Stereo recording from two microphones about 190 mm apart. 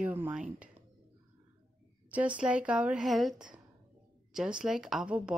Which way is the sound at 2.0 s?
5° right (ahead or behind).